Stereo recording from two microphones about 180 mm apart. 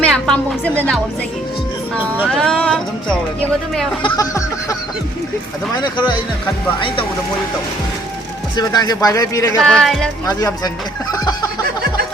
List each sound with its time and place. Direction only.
0.0 s speech: 5° left (ahead or behind)
2.2 s speech: 5° left (ahead or behind)
4.0 s speech: 20° left (ahead or behind)
6.7 s speech: 30° left (ahead or behind)
8.5 s speech: 20° left (ahead or behind)
9.6 s speech: centre (ahead or behind)
10.2 s speech: 20° left (ahead or behind)
11.1 s snicker: 20° left (ahead or behind)